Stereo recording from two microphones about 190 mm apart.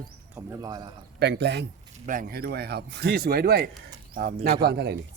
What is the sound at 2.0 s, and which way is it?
Speech, 50° right (ahead or behind).